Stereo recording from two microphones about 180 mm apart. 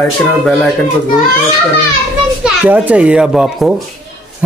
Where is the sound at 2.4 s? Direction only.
10° right (ahead or behind).